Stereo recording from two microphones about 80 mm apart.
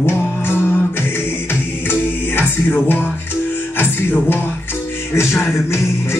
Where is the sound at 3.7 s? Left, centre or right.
Left.